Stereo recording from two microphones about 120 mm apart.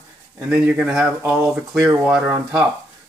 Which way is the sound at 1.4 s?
15° right (ahead or behind).